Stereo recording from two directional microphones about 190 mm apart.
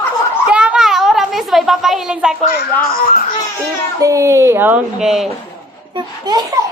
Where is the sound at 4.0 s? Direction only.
15° right (ahead or behind).